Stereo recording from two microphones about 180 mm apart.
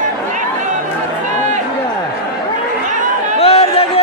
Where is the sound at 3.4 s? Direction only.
35° left (ahead or behind).